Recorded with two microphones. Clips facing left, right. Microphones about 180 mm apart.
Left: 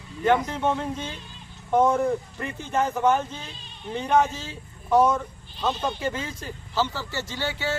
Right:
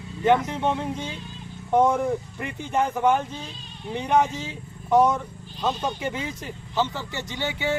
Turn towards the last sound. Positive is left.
turn(degrees=-15)  # may be behind; listen again after turning